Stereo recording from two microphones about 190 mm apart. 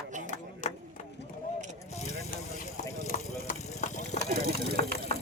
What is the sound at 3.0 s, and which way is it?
Clip-clop, 40° left (ahead or behind).